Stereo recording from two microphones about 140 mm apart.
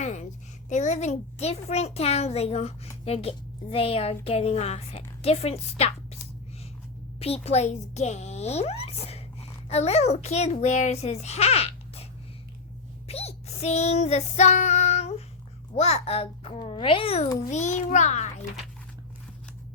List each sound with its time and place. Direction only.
0.0 s a sound: 60° left (ahead or behind)
0.7 s a woman's voice: 55° left (ahead or behind)
7.2 s a child's voice: 45° left (ahead or behind)
13.1 s female singing: 45° left (ahead or behind)
15.7 s a woman's voice: 50° left (ahead or behind)
17.5 s a child's voice: 55° left (ahead or behind)